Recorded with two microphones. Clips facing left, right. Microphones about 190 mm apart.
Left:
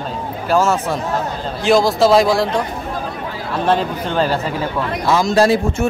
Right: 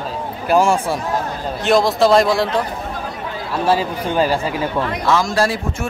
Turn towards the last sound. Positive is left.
turn(degrees=20)  # may be behind; listen again after turning